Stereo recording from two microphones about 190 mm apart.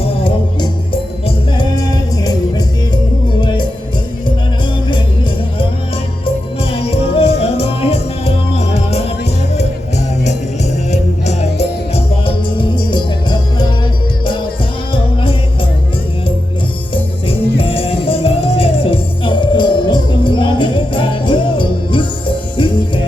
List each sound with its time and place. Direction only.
0.0 s music: 30° left (ahead or behind)
6.6 s music: 30° left (ahead or behind)
10.9 s music: 35° left (ahead or behind)
16.9 s music: 30° left (ahead or behind)